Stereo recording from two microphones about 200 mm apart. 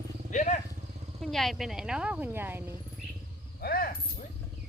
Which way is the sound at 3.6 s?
50° left (ahead or behind).